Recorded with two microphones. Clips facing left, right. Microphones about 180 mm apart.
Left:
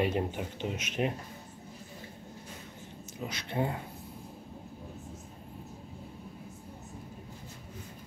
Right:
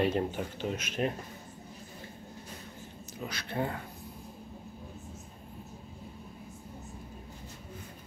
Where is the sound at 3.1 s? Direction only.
20° left (ahead or behind).